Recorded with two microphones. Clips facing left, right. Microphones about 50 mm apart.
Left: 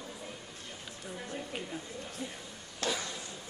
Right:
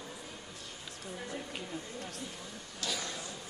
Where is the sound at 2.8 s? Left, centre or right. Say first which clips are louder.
Left 4 dB; left.